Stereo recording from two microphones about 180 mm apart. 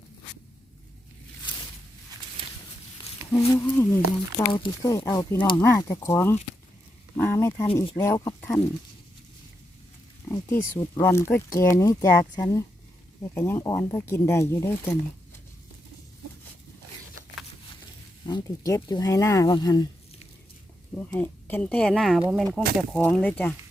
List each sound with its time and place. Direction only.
2.4 s walk: 30° right (ahead or behind)
3.3 s speech: 15° left (ahead or behind)
10.2 s speech: 15° left (ahead or behind)
18.3 s speech: 20° left (ahead or behind)
21.1 s speech: 10° left (ahead or behind)